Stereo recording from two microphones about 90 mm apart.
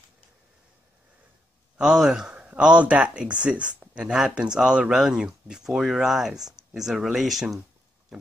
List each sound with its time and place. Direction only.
1.8 s a man's voice: 10° right (ahead or behind)